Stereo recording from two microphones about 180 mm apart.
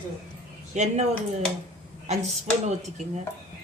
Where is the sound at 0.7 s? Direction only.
40° right (ahead or behind).